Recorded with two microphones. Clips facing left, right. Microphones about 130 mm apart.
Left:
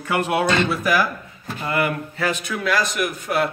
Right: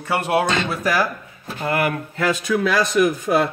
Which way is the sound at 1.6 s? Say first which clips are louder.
Right 1 dB; 65° right (ahead or behind).